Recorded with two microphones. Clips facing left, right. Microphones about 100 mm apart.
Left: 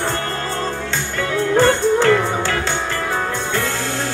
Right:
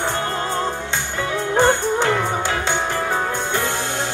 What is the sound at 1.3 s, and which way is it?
Music, 20° right (ahead or behind).